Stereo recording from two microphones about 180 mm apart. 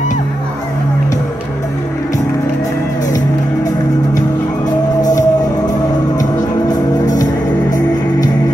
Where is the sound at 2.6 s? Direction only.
20° left (ahead or behind).